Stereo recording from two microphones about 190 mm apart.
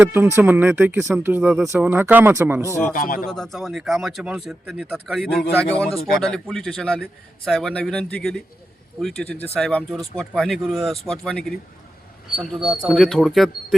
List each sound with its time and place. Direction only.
0.0 s speech: 10° right (ahead or behind)
2.9 s a man's voice: 45° left (ahead or behind)
3.2 s speech: centre (ahead or behind)